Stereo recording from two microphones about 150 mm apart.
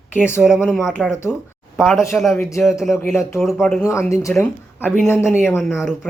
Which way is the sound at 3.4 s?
Centre (ahead or behind).